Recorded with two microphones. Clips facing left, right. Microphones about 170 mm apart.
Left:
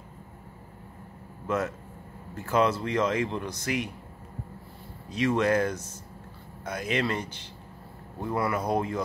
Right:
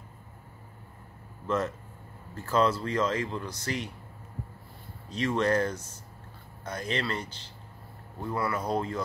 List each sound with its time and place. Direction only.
2.3 s speech: 15° left (ahead or behind)
5.1 s speech: 10° left (ahead or behind)